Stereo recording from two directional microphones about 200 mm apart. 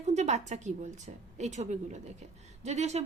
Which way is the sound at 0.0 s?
35° right (ahead or behind).